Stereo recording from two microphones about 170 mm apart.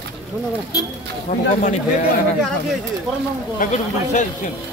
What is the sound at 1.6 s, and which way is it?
Speech, 50° left (ahead or behind).